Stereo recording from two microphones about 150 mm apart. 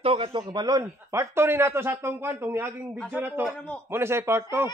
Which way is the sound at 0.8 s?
15° right (ahead or behind).